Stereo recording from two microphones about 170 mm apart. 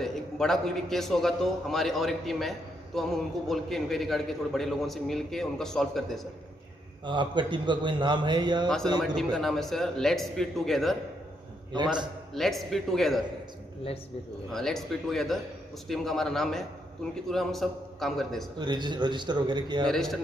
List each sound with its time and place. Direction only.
0.0 s a man's voice: centre (ahead or behind)
7.1 s a man's voice: 25° right (ahead or behind)
9.0 s a man's voice: centre (ahead or behind)
11.7 s a man's voice: 25° right (ahead or behind)
12.4 s a man's voice: centre (ahead or behind)
14.5 s a man's voice: 5° left (ahead or behind)
18.6 s a man's voice: 25° right (ahead or behind)
19.9 s a man's voice: centre (ahead or behind)